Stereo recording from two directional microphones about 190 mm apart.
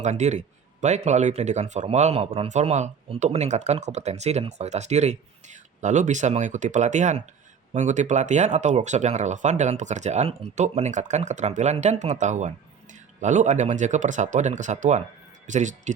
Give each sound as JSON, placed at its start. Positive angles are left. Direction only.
{"t": 0.0, "sound": "speech", "side_deg": -40}